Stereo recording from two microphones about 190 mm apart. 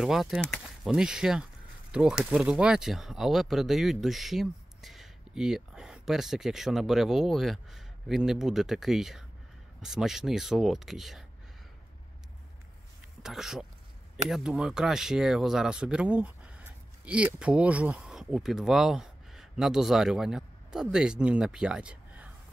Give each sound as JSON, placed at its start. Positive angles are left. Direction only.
{"t": 0.0, "sound": "speech", "side_deg": 0}
{"t": 13.2, "sound": "speech", "side_deg": 0}